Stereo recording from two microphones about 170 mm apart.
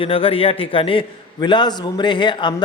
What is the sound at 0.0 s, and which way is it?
A man's voice, 35° left (ahead or behind).